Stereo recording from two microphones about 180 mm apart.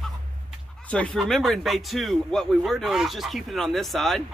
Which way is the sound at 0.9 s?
5° left (ahead or behind).